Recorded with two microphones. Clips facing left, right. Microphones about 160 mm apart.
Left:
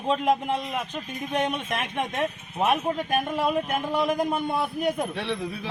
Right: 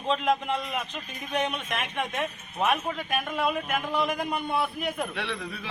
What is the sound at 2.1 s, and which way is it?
Speech, 20° left (ahead or behind).